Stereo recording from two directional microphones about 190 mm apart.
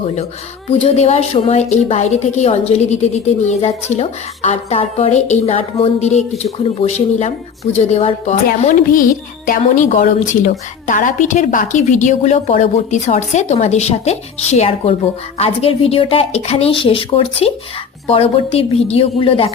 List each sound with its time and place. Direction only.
0.7 s a woman's voice: 35° left (ahead or behind)
8.4 s a woman's voice: 45° left (ahead or behind); by 17.5 s 30° left (ahead or behind)
18.5 s a woman's voice: 30° left (ahead or behind)